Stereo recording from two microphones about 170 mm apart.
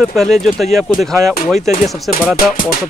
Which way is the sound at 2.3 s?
55° left (ahead or behind).